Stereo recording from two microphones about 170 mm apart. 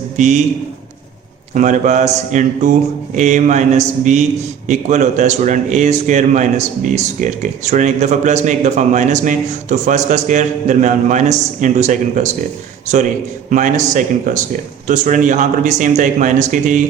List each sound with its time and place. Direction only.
0.2 s a man's voice: 45° right (ahead or behind)
1.5 s a man's voice: 45° right (ahead or behind)
13.5 s a man's voice: 45° right (ahead or behind)